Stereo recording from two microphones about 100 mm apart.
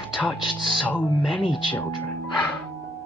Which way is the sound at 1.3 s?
55° left (ahead or behind).